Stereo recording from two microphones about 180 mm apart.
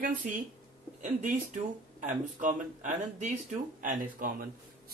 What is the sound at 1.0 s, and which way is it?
Speech, 45° right (ahead or behind).